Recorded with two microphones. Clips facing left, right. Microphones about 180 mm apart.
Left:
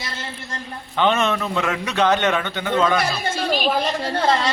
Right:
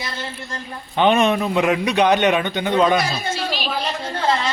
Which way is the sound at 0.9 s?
15° right (ahead or behind).